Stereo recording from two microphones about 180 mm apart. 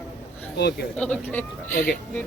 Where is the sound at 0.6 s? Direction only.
65° left (ahead or behind).